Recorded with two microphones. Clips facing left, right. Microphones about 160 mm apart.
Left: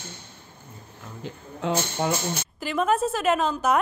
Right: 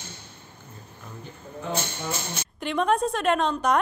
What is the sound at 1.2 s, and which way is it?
Speech, 90° left.